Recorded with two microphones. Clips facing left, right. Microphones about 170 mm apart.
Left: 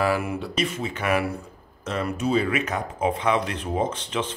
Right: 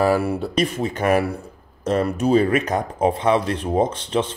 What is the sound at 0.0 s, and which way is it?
Speech, 35° right (ahead or behind).